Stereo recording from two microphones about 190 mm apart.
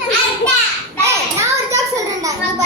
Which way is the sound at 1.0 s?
15° right (ahead or behind).